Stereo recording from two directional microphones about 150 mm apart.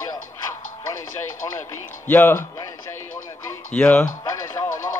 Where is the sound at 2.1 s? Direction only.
15° left (ahead or behind).